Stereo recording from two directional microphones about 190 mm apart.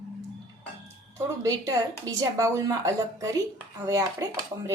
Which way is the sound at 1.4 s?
20° right (ahead or behind).